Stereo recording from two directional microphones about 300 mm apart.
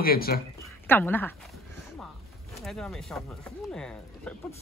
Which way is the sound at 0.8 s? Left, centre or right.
Centre.